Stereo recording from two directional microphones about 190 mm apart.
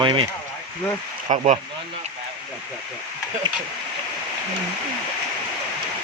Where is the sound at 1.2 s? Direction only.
35° right (ahead or behind).